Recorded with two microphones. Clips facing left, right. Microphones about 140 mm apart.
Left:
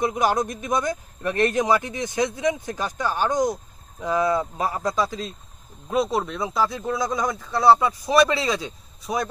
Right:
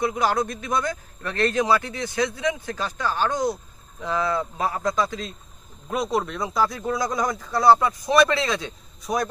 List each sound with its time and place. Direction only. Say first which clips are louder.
0.0 s a man's voice: left 1 dB; 20° left (ahead or behind); by 9.3 s centre (ahead or behind)